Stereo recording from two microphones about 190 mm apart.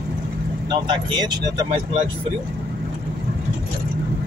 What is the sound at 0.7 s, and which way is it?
Speech, 20° right (ahead or behind).